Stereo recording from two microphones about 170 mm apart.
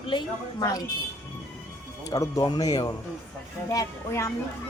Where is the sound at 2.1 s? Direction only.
20° left (ahead or behind).